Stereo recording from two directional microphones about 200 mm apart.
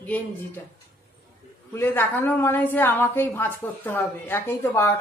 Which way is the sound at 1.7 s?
10° left (ahead or behind).